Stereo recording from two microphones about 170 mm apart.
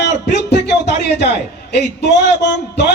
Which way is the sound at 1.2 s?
85° left.